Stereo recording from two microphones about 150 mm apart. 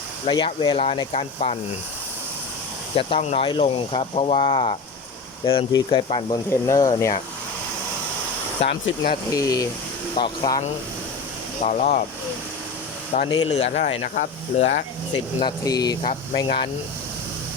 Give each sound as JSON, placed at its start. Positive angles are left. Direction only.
{"t": 0.3, "sound": "speech", "side_deg": 35}
{"t": 2.9, "sound": "speech", "side_deg": 40}
{"t": 9.3, "sound": "speech", "side_deg": 25}
{"t": 11.6, "sound": "speech", "side_deg": 50}
{"t": 13.1, "sound": "speech", "side_deg": 55}
{"t": 15.4, "sound": "speech", "side_deg": 30}